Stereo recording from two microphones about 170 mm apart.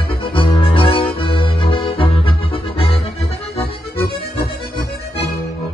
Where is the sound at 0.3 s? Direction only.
30° left (ahead or behind).